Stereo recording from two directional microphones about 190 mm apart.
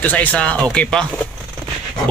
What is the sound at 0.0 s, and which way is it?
Speech, 10° left (ahead or behind).